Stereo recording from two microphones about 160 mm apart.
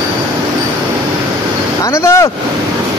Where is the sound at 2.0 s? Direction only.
20° left (ahead or behind).